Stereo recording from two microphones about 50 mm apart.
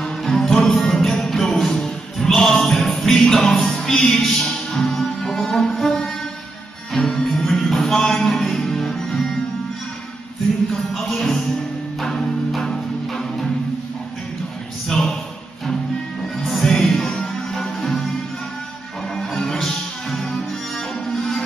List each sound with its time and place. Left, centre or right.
0.0 s music: centre
10.7 s music: centre
14.9 s a sound: centre
16.4 s music: centre
19.1 s music: centre